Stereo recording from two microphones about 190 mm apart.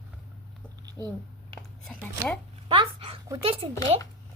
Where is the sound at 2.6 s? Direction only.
25° right (ahead or behind).